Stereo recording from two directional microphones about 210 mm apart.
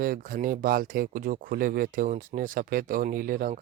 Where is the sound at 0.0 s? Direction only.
40° right (ahead or behind).